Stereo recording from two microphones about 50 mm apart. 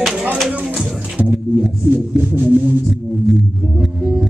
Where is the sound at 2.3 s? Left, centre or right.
Right.